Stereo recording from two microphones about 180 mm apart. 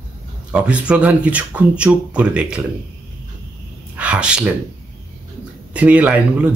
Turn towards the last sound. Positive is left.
turn(degrees=-10)  # may be behind; listen again after turning